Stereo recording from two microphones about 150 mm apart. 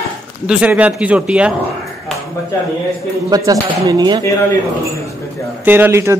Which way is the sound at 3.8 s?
25° right (ahead or behind).